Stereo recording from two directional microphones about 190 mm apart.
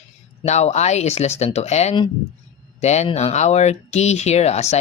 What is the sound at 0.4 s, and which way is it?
Speech, 35° left (ahead or behind).